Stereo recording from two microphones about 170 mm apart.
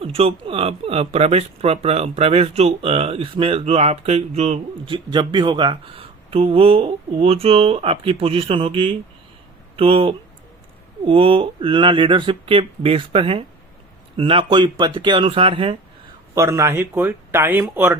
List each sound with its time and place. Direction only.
0.0 s speech: 35° right (ahead or behind)
5.1 s speech: 25° right (ahead or behind)
16.3 s speech: 15° right (ahead or behind)